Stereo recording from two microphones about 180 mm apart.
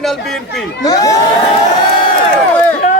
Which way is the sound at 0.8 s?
20° left (ahead or behind).